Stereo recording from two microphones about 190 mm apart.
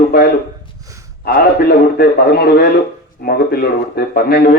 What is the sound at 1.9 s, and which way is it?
A man's voice, 55° left (ahead or behind).